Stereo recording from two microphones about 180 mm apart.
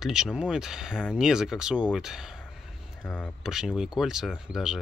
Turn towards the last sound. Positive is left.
turn(degrees=-5)  # may be behind; listen again after turning